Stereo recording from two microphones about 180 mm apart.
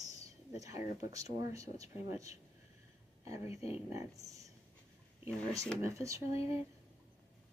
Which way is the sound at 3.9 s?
20° right (ahead or behind).